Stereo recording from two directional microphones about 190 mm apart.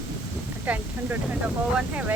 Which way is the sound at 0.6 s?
10° right (ahead or behind).